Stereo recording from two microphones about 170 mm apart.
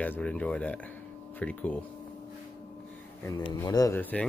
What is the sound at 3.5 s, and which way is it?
Speech, 20° left (ahead or behind).